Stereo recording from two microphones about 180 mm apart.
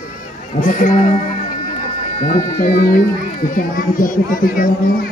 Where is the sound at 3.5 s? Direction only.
50° left (ahead or behind).